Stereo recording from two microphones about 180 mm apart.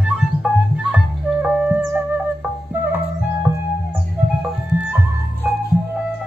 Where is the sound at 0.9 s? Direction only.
5° right (ahead or behind).